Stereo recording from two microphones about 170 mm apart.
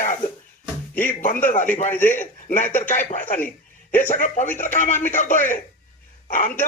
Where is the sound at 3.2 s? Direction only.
10° left (ahead or behind).